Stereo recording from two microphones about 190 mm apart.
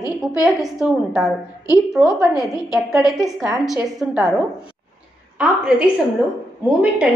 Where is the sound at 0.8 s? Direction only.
5° right (ahead or behind).